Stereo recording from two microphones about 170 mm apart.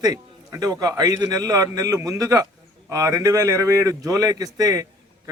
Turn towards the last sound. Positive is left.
turn(degrees=-20)  # may be behind; listen again after turning